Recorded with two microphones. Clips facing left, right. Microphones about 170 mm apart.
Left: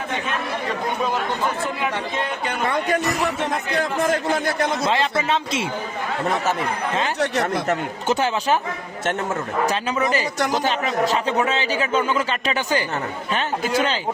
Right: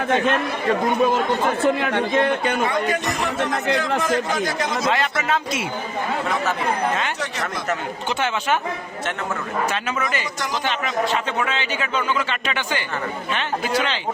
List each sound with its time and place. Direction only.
1.5 s speech: 65° right (ahead or behind)
4.0 s a man's voice: 55° left (ahead or behind)
4.9 s speech: 25° left (ahead or behind)
7.7 s speech: 40° left (ahead or behind)
9.6 s speech: 35° left (ahead or behind)